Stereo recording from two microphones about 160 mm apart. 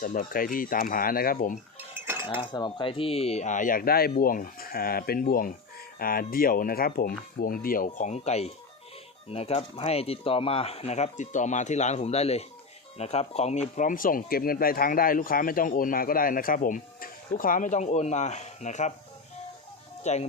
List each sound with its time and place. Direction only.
0.0 s speech: 60° left (ahead or behind)
2.2 s speech: 30° left (ahead or behind); by 7.9 s 65° left (ahead or behind)
7.9 s speech: 45° left (ahead or behind)
20.0 s speech: 45° left (ahead or behind)